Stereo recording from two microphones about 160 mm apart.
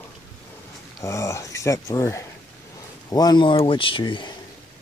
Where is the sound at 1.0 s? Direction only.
20° left (ahead or behind).